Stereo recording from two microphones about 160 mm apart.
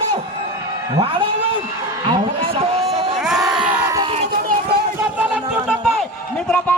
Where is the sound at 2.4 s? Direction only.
35° right (ahead or behind).